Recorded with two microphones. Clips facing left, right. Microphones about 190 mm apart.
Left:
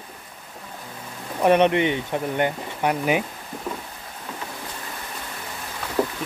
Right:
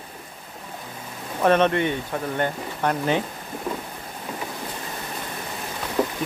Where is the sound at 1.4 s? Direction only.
15° left (ahead or behind).